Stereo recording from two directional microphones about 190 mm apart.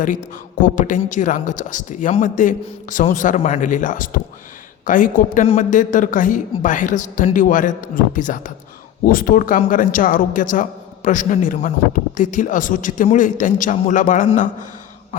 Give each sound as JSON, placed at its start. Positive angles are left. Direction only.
{"t": 0.6, "sound": "a man's voice", "side_deg": 45}